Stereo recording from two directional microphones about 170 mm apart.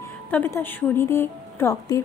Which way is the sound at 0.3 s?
10° left (ahead or behind).